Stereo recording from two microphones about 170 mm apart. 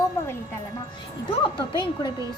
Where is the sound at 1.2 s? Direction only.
30° left (ahead or behind).